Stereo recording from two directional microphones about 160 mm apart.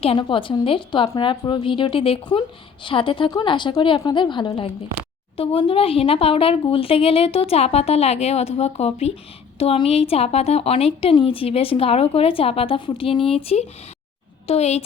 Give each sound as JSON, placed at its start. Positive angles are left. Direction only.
{"t": 0.0, "sound": "a woman's voice", "side_deg": 35}